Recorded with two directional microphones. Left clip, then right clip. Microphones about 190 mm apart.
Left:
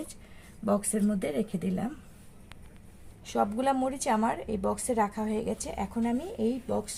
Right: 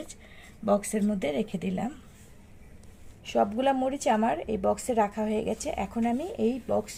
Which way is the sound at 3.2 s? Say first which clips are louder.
Right 3 dB; 25° right (ahead or behind).